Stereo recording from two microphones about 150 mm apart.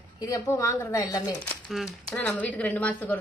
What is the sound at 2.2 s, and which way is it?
Speech, 10° left (ahead or behind).